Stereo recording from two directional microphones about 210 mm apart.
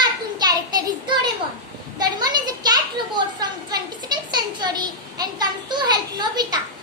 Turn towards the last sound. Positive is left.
turn(degrees=-20)  # may be behind; listen again after turning